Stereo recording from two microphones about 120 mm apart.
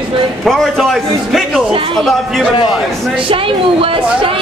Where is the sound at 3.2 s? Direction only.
50° right (ahead or behind).